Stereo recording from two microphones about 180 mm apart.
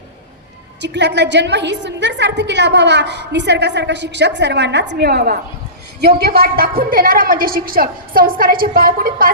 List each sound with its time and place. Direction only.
0.8 s a woman's voice: 75° right (ahead or behind); by 9.3 s 50° right (ahead or behind)